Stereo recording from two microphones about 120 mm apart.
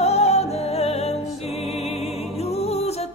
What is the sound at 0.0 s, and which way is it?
Music, 60° left (ahead or behind).